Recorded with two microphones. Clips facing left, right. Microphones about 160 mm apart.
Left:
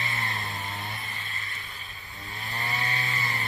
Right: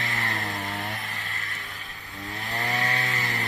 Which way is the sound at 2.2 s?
90° right.